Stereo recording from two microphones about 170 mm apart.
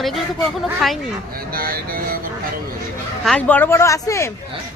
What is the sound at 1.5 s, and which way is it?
Speech, 60° right (ahead or behind).